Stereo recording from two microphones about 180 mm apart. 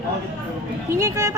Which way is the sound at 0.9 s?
15° right (ahead or behind).